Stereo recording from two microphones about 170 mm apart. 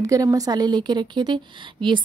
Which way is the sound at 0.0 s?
20° right (ahead or behind).